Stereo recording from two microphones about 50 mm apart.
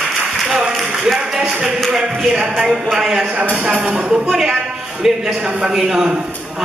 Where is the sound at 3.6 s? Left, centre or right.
Centre.